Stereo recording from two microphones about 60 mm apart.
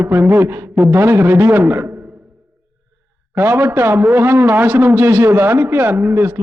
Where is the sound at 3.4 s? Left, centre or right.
Right.